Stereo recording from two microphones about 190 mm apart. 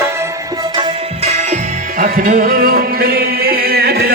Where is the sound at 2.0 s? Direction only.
45° right (ahead or behind).